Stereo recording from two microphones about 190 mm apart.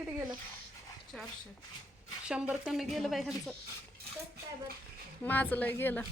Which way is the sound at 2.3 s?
5° right (ahead or behind).